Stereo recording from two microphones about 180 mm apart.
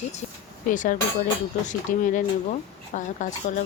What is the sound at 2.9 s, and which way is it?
Speech, 45° left (ahead or behind).